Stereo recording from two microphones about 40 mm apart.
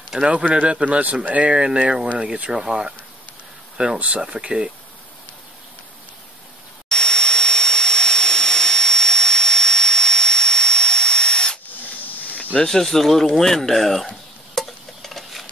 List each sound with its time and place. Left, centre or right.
0.1 s speech: centre
0.5 s speech: right
6.9 s vacuum cleaner: centre
12.0 s snake: left
12.6 s speech: centre
14.5 s stir: centre